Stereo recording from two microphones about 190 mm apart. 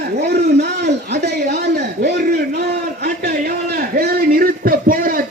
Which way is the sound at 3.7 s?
50° right (ahead or behind).